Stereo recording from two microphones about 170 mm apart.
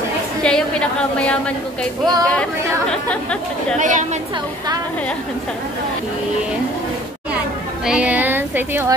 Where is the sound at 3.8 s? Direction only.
45° right (ahead or behind).